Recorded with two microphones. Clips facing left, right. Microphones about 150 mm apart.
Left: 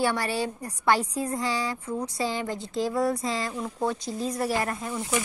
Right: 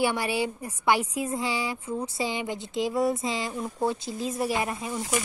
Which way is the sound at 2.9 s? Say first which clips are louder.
Right 1 dB; 20° right (ahead or behind).